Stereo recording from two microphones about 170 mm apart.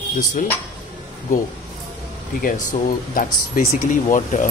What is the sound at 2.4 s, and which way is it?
Speech, 55° left (ahead or behind).